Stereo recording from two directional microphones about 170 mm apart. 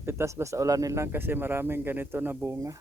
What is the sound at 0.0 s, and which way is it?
Speech, 15° right (ahead or behind).